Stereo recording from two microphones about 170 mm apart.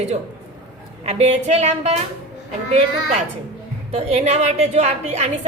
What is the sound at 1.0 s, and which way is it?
Speech, 40° right (ahead or behind).